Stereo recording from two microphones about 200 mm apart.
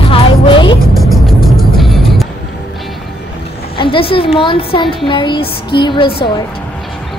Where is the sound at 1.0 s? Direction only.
Centre (ahead or behind).